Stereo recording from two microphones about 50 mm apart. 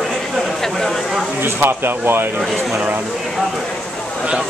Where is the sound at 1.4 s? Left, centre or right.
Right.